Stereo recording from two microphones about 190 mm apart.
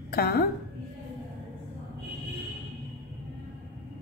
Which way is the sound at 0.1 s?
55° left (ahead or behind).